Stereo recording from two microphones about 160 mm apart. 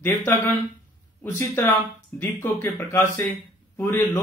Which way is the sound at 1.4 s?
15° left (ahead or behind).